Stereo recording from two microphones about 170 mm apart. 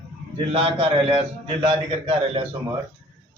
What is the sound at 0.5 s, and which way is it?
A man's voice, 35° right (ahead or behind).